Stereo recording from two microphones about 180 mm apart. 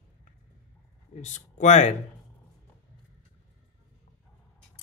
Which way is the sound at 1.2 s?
40° left (ahead or behind).